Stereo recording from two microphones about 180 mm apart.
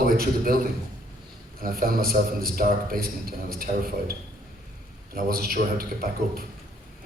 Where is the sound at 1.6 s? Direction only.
55° right (ahead or behind).